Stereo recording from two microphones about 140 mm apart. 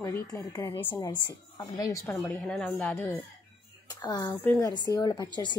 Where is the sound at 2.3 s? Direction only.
10° left (ahead or behind).